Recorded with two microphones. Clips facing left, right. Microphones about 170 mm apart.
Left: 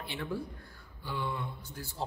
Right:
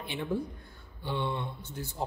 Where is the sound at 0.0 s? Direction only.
20° right (ahead or behind).